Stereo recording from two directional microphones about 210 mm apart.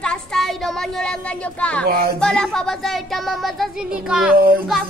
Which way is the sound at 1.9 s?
50° right (ahead or behind).